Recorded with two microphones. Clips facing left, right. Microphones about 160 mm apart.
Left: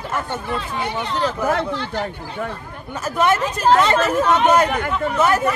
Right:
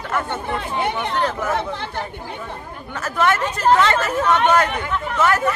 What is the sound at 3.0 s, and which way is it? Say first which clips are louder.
Speech: left 1 dB; 15° left (ahead or behind).